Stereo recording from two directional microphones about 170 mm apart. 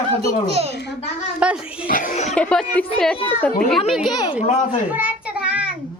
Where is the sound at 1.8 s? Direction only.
55° left (ahead or behind).